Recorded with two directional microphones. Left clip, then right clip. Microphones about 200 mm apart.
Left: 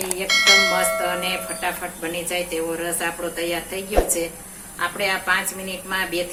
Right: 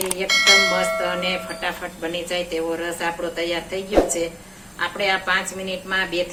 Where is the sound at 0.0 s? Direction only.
Centre (ahead or behind).